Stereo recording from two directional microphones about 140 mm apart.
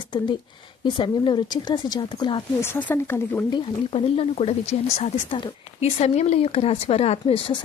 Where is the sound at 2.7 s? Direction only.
15° left (ahead or behind).